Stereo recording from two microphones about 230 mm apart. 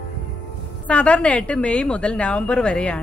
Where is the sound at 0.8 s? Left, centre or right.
Centre.